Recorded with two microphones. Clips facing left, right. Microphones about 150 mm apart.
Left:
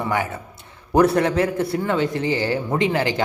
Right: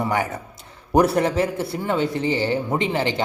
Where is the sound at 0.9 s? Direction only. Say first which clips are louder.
Left 1 dB; 10° right (ahead or behind).